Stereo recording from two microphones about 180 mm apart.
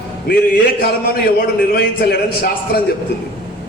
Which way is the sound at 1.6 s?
55° left (ahead or behind).